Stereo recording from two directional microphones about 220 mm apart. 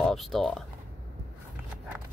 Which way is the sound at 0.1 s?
Centre (ahead or behind).